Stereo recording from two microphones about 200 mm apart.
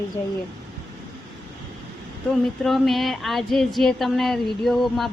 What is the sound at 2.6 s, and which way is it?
Speech, centre (ahead or behind).